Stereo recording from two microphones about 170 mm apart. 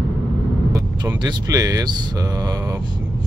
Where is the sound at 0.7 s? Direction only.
20° right (ahead or behind).